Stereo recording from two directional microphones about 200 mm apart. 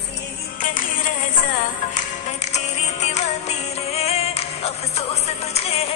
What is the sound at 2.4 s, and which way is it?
Music, 35° left (ahead or behind).